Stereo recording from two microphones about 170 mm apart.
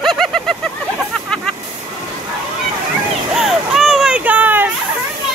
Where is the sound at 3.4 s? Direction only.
Centre (ahead or behind).